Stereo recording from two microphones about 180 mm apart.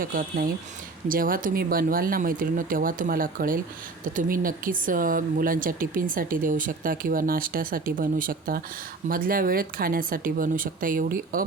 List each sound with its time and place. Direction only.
0.0 s speech: 50° right (ahead or behind)